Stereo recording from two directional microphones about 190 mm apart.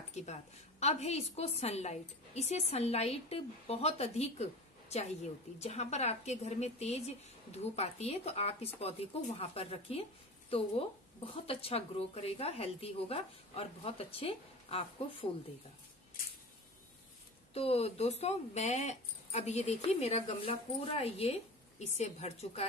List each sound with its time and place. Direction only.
0.1 s speech: 35° left (ahead or behind)
17.6 s speech: 30° left (ahead or behind)